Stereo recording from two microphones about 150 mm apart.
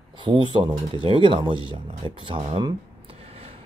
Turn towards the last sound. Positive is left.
turn(degrees=-40)  # may be behind; listen again after turning